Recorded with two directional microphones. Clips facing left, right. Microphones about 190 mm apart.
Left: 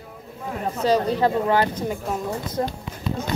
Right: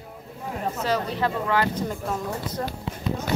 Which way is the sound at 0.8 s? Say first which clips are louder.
Left 7 dB; 20° left (ahead or behind).